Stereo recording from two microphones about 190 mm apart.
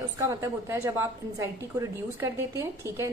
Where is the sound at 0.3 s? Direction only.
15° right (ahead or behind).